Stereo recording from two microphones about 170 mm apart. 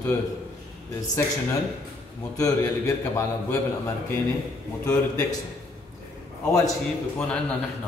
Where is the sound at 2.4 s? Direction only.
20° left (ahead or behind).